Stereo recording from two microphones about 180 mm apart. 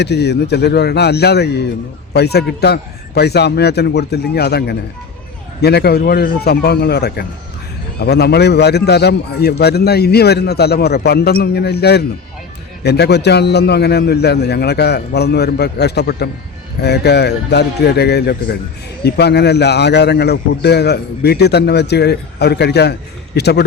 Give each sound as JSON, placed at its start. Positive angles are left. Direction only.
{"t": 0.0, "sound": "a man's voice", "side_deg": 70}